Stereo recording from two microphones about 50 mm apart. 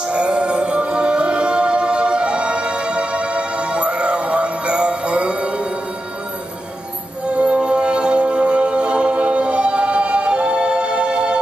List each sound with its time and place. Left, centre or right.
0.1 s music: centre
7.2 s music: right